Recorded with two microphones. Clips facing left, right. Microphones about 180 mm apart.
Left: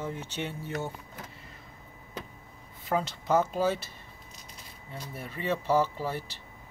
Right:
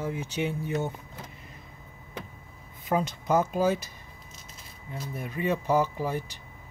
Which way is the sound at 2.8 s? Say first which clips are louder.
Right 2 dB; 15° right (ahead or behind).